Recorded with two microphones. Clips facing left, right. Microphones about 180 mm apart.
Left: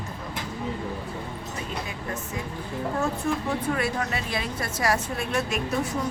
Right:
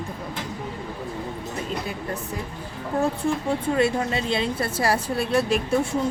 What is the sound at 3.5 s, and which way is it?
Speech, 25° right (ahead or behind).